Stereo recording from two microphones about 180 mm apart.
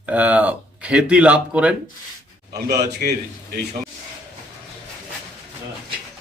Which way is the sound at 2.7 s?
60° right (ahead or behind).